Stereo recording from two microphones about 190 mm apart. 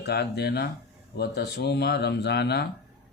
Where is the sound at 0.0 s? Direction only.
60° left (ahead or behind).